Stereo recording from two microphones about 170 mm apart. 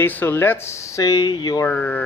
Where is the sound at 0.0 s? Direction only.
10° left (ahead or behind).